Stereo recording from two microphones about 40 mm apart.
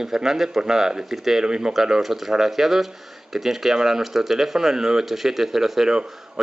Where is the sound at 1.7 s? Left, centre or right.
Centre.